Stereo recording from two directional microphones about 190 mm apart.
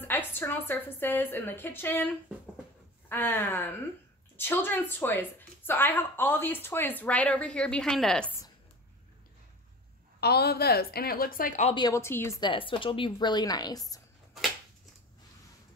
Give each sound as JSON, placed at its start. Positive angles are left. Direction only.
{"t": 0.0, "sound": "speech", "side_deg": 10}
{"t": 10.2, "sound": "a woman's voice", "side_deg": 55}
{"t": 11.7, "sound": "a woman's voice", "side_deg": 25}
{"t": 12.0, "sound": "speech", "side_deg": 15}
{"t": 12.4, "sound": "a woman's voice", "side_deg": 25}